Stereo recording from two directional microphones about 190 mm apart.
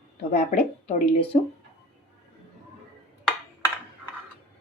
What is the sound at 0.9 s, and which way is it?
Speech, 30° left (ahead or behind).